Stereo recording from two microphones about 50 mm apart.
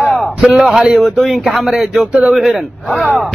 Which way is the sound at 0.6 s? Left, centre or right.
Right.